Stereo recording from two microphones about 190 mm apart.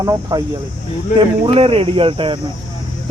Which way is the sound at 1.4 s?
30° right (ahead or behind).